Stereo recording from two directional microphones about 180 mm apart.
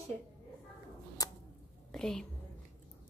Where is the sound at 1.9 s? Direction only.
5° left (ahead or behind).